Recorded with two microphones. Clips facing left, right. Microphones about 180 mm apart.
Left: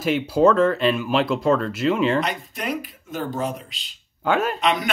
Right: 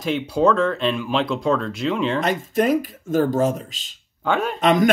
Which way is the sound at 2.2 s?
45° right (ahead or behind).